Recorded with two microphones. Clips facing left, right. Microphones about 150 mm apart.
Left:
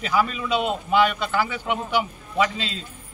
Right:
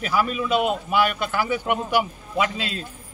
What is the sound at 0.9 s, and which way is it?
A man's voice, 10° right (ahead or behind).